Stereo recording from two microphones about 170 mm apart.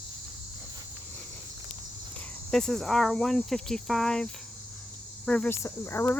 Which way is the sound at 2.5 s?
5° left (ahead or behind).